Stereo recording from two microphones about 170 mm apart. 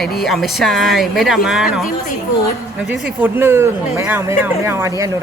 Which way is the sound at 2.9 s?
10° right (ahead or behind).